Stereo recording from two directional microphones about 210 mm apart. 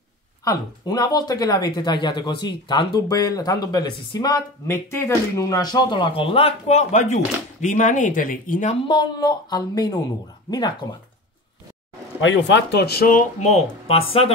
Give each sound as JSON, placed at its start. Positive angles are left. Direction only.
{"t": 0.5, "sound": "speech", "side_deg": 15}
{"t": 8.8, "sound": "speech", "side_deg": 20}
{"t": 12.2, "sound": "speech", "side_deg": 60}